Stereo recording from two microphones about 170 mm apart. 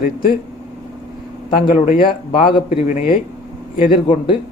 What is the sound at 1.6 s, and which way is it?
A man's voice, 50° left (ahead or behind).